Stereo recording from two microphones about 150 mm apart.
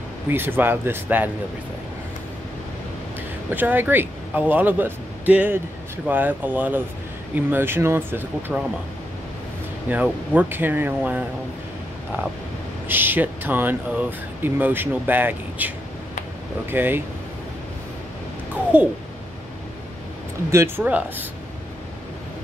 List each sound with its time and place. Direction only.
0.3 s speech: 15° right (ahead or behind)
3.4 s speech: 10° right (ahead or behind)
9.8 s speech: 10° right (ahead or behind)
12.8 s speech: 15° right (ahead or behind)
16.7 s speech: 15° right (ahead or behind)
18.5 s a sound: 10° right (ahead or behind)
20.5 s speech: 15° right (ahead or behind)